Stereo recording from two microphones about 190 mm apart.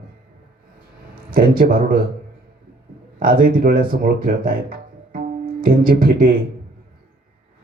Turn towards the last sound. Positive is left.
turn(degrees=-50)  # may be behind; listen again after turning